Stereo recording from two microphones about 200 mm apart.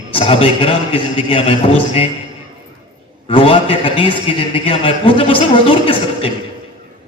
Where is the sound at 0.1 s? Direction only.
25° left (ahead or behind).